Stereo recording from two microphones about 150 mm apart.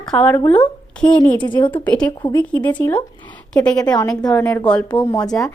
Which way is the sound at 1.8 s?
5° left (ahead or behind).